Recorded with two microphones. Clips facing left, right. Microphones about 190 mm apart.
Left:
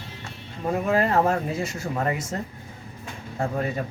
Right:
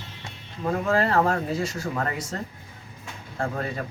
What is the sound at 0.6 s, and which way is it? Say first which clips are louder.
Speech: left 1 dB; 15° left (ahead or behind).